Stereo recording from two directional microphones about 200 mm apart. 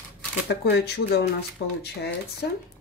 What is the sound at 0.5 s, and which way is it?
Speech, 55° left (ahead or behind).